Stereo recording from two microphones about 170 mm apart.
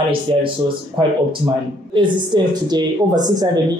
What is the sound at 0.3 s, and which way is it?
Speech, 30° right (ahead or behind).